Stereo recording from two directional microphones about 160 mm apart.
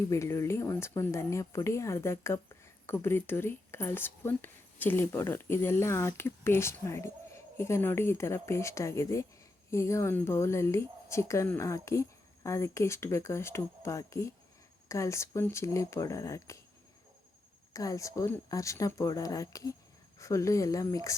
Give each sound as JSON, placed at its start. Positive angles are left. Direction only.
{"t": 0.1, "sound": "speech", "side_deg": 20}
{"t": 17.7, "sound": "speech", "side_deg": 20}